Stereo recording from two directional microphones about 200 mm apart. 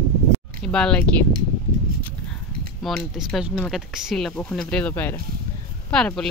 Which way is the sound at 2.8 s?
Centre (ahead or behind).